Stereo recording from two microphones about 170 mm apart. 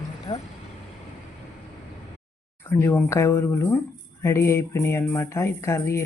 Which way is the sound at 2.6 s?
15° left (ahead or behind).